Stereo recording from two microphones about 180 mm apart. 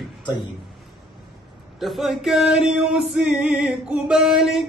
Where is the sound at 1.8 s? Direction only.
Centre (ahead or behind).